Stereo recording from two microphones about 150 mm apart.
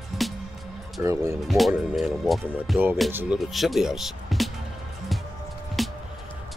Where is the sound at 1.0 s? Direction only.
20° right (ahead or behind).